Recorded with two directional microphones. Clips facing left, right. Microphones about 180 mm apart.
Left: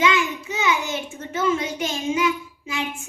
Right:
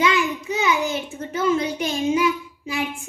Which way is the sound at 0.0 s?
35° right (ahead or behind).